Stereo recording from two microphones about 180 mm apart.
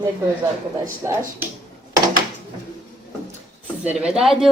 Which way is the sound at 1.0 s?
15° right (ahead or behind).